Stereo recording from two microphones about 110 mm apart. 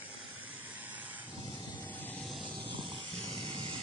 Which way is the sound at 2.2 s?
Centre (ahead or behind).